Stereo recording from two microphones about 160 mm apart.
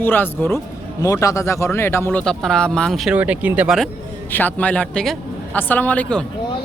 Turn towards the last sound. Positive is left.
turn(degrees=5)  # may be behind; listen again after turning